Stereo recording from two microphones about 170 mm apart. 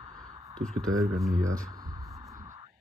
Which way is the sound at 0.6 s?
70° right (ahead or behind).